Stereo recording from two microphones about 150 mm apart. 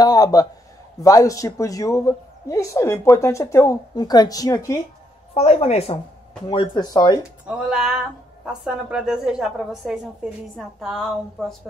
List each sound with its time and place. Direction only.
0.0 s a sound: 25° left (ahead or behind)
1.0 s a woman's voice: 20° left (ahead or behind)
5.3 s a woman's voice: 45° left (ahead or behind)
6.4 s a woman's voice: 30° left (ahead or behind)
7.4 s a woman's voice: 5° right (ahead or behind)